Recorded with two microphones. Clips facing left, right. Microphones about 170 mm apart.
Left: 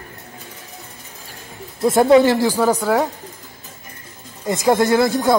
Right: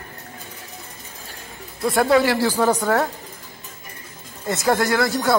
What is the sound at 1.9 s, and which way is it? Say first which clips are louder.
Speech: left 5 dB; 20° left (ahead or behind).